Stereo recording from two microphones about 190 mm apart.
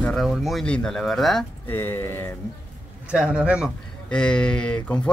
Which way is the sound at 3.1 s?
5° right (ahead or behind).